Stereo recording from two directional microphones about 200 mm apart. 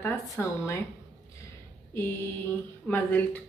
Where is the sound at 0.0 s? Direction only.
10° left (ahead or behind).